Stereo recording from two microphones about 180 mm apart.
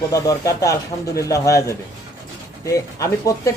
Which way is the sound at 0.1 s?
20° left (ahead or behind).